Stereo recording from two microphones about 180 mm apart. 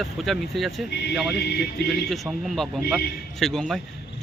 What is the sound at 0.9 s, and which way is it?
Speech, 70° left (ahead or behind).